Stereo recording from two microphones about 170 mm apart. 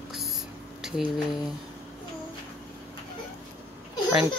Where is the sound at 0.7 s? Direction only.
5° right (ahead or behind).